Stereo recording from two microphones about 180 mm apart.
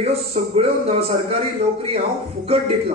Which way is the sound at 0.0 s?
35° right (ahead or behind).